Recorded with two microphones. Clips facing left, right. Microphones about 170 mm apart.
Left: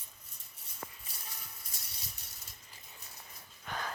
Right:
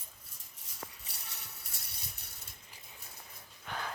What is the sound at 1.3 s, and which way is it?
Mechanisms, 60° right (ahead or behind).